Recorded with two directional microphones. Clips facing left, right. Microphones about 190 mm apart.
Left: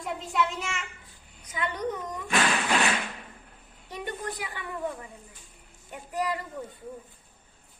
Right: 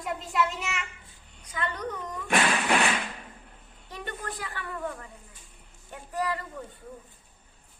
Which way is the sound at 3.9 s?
15° left (ahead or behind).